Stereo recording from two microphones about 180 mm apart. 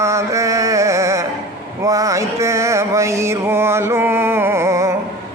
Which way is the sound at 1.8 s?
20° right (ahead or behind).